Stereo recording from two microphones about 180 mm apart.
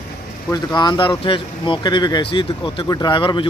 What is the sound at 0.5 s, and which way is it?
Speech, 25° left (ahead or behind).